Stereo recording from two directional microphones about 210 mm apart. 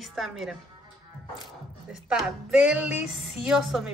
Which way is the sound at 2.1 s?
5° right (ahead or behind).